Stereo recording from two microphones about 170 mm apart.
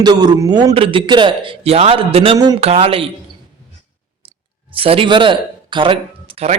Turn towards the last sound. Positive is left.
turn(degrees=-35)  # may be behind; listen again after turning